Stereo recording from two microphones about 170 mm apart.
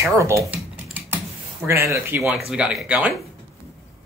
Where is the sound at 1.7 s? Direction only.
15° right (ahead or behind).